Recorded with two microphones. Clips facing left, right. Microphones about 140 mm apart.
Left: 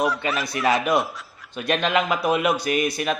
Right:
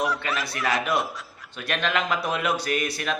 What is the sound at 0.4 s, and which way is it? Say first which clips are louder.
Speech: left 6 dB; 20° left (ahead or behind).